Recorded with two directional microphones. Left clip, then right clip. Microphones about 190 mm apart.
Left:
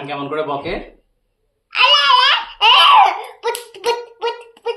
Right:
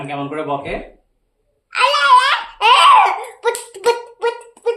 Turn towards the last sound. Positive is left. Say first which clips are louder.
# right 3 dB
turn(degrees=-10)  # may be behind; listen again after turning